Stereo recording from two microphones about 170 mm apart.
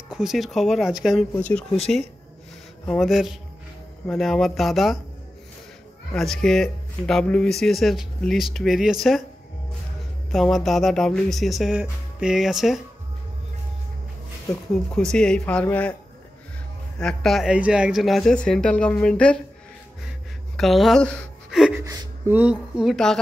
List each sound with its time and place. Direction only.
0.1 s speech: centre (ahead or behind)
2.9 s speech: centre (ahead or behind)
6.1 s speech: centre (ahead or behind)
10.3 s speech: centre (ahead or behind)
15.0 s speech: 5° left (ahead or behind)
17.0 s speech: 5° left (ahead or behind)
20.5 s a sound: centre (ahead or behind)
21.7 s speech: 20° right (ahead or behind); by 23.1 s centre (ahead or behind)